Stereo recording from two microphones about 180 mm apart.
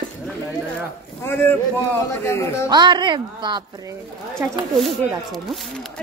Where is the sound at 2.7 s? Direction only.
25° right (ahead or behind).